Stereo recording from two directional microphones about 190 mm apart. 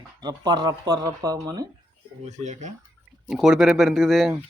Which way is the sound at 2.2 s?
40° right (ahead or behind).